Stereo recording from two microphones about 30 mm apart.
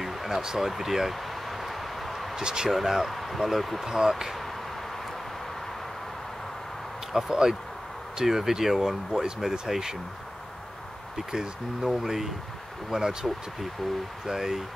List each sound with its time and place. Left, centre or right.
0.0 s a sound: centre
2.3 s speech: right
2.7 s speech: centre
3.8 s speech: centre
4.1 s speech: centre
7.1 s speech: centre
11.3 s speech: centre
12.9 s speech: right